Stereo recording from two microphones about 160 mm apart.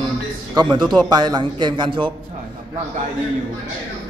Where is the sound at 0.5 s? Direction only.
25° right (ahead or behind).